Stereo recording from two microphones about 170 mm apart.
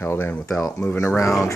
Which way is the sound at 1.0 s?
20° left (ahead or behind).